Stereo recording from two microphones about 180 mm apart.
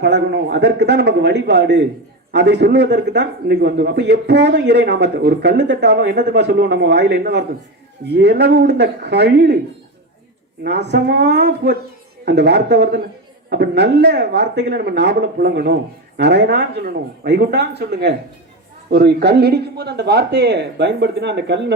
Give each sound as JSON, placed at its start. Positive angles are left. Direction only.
{"t": 0.0, "sound": "a man's voice", "side_deg": -70}
{"t": 10.6, "sound": "a man's voice", "side_deg": -70}